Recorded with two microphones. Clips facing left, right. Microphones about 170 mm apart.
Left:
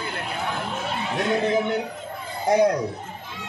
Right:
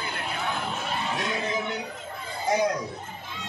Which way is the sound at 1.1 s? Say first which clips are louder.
Left 11 dB; 55° left (ahead or behind).